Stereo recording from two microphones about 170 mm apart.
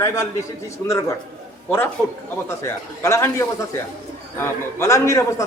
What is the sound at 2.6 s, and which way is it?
A man's voice, 15° left (ahead or behind).